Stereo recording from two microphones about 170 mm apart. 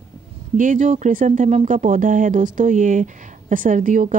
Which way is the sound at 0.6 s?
50° right (ahead or behind).